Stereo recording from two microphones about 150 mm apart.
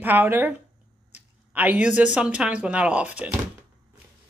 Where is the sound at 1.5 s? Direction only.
10° right (ahead or behind).